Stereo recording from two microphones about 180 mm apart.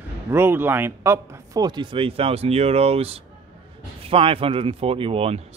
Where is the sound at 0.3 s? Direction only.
10° right (ahead or behind).